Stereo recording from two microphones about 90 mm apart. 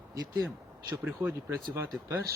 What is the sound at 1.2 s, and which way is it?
Speech, 30° right (ahead or behind).